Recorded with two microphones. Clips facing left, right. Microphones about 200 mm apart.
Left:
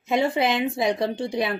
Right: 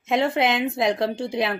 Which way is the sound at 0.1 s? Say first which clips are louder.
Right 1 dB; centre (ahead or behind).